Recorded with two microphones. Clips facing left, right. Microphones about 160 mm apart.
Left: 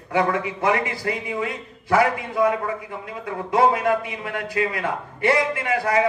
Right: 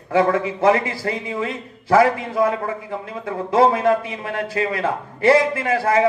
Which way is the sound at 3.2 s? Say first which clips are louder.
Right 3 dB; 30° right (ahead or behind).